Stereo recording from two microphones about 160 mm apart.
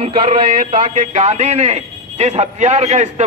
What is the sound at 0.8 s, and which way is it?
A man's voice, 50° right (ahead or behind).